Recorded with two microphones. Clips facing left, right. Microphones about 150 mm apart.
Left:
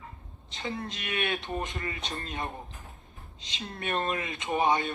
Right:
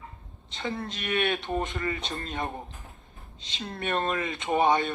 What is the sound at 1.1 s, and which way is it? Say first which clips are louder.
Speech: right 5 dB; 30° right (ahead or behind).